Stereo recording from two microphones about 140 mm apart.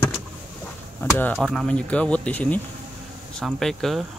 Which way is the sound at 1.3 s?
Centre (ahead or behind).